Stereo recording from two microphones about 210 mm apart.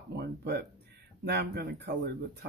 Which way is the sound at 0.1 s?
55° right (ahead or behind).